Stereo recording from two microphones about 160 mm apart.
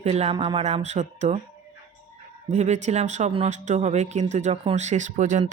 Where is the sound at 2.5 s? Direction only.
45° right (ahead or behind).